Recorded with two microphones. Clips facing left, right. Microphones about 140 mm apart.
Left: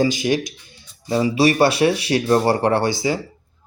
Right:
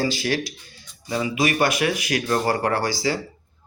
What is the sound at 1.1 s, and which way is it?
Speech, 35° left (ahead or behind).